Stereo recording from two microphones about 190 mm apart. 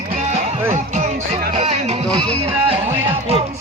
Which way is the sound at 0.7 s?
40° right (ahead or behind).